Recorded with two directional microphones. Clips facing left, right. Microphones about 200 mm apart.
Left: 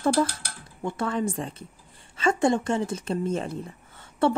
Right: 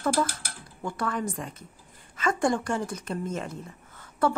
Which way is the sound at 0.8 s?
25° left (ahead or behind).